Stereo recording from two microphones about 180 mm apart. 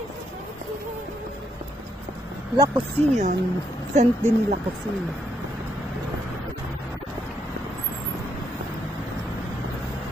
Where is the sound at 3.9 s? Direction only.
40° right (ahead or behind).